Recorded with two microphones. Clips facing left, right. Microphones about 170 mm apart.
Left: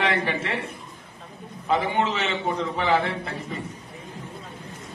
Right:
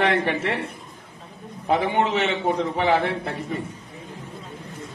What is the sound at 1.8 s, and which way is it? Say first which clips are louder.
A man's voice: right 3 dB; 60° right (ahead or behind).